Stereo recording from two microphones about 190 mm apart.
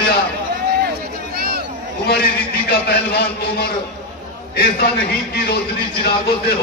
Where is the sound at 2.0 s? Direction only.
55° left (ahead or behind).